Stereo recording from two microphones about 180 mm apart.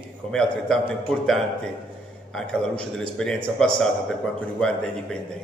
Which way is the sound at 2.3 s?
5° left (ahead or behind).